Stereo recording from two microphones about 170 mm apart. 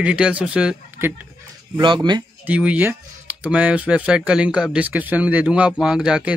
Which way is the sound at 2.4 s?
10° right (ahead or behind).